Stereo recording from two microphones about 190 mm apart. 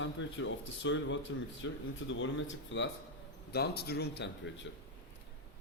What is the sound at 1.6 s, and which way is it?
Speech, 90° left.